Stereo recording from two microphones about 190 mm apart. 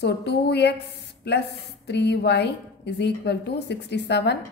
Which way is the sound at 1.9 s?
60° left (ahead or behind).